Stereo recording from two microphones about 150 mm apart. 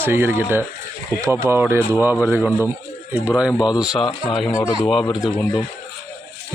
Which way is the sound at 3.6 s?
25° left (ahead or behind).